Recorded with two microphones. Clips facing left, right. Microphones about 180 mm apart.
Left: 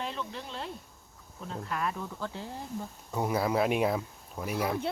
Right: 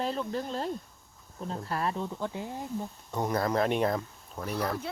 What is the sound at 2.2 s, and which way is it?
Speech, 15° right (ahead or behind).